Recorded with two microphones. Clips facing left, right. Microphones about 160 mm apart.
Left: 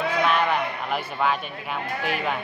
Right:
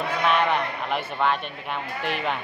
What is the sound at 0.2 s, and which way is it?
A man's voice, centre (ahead or behind).